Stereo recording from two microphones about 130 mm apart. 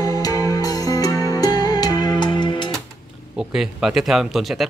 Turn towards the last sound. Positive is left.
turn(degrees=0)  # may be behind; listen again after turning